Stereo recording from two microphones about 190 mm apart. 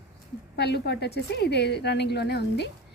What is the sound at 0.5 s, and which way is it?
A woman's voice, 60° left (ahead or behind).